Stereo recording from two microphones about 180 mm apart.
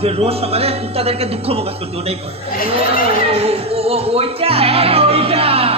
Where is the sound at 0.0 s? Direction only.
35° right (ahead or behind).